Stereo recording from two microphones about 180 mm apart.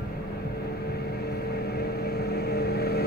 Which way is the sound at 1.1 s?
60° left (ahead or behind).